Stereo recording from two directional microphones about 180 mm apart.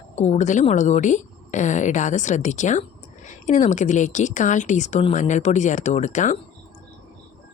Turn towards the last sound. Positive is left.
turn(degrees=40)  # may be behind; listen again after turning